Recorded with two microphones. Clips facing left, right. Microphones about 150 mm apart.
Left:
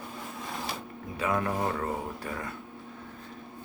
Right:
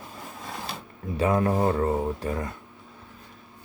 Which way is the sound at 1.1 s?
35° right (ahead or behind).